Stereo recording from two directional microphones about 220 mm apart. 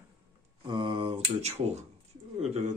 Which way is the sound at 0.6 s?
20° right (ahead or behind).